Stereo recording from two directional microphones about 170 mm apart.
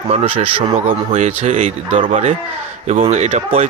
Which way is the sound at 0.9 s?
45° right (ahead or behind).